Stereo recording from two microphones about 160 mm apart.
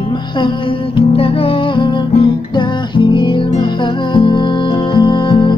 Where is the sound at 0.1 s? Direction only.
30° left (ahead or behind).